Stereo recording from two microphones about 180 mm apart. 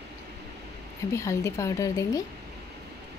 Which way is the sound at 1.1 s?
15° left (ahead or behind).